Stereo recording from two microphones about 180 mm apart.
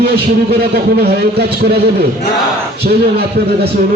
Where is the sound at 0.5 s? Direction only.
60° right (ahead or behind).